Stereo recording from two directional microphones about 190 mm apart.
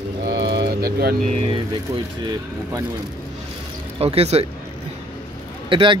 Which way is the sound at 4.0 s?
30° right (ahead or behind).